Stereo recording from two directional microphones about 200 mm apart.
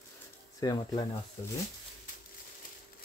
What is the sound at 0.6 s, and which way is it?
Speech, 20° left (ahead or behind).